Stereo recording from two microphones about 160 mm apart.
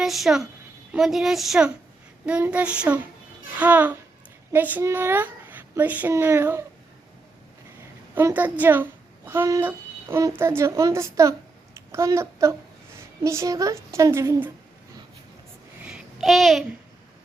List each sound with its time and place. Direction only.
0.0 s a woman's voice: centre (ahead or behind)
8.1 s a child's voice: 10° right (ahead or behind)
15.8 s babbling: 5° right (ahead or behind)